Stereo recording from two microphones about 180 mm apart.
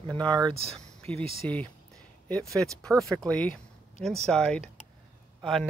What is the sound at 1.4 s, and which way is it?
Speech, 10° left (ahead or behind).